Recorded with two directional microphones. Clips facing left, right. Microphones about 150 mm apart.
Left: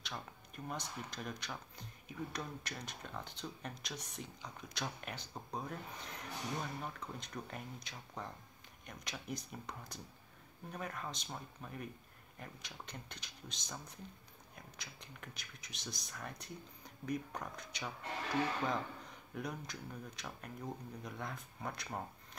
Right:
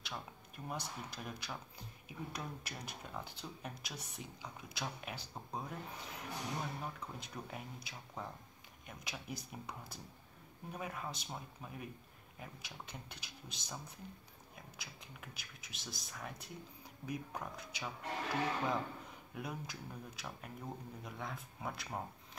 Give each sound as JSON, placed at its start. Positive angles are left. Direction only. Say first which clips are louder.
{"t": 0.7, "sound": "speech", "louder": "even", "side_deg": -5}